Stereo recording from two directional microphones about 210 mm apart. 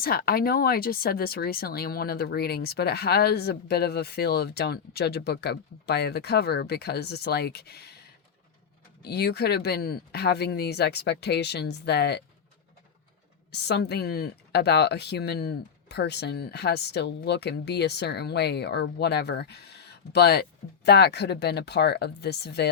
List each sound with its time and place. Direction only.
0.0 s speech: 45° left (ahead or behind)
13.5 s speech: 50° left (ahead or behind)